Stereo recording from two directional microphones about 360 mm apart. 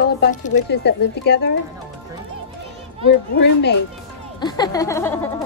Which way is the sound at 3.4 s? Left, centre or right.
Left.